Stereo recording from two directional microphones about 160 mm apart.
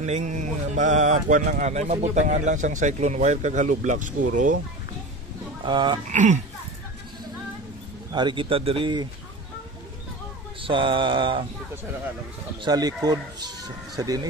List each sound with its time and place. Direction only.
0.0 s speech: 50° right (ahead or behind)
5.6 s speech: 30° right (ahead or behind)
6.1 s speech: 50° right (ahead or behind)
8.1 s speech: 30° right (ahead or behind)
10.6 s a sound: 35° right (ahead or behind)
12.6 s speech: 25° right (ahead or behind)